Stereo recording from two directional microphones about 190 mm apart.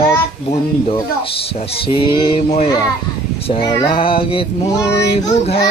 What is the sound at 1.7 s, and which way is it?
Speech, 25° left (ahead or behind).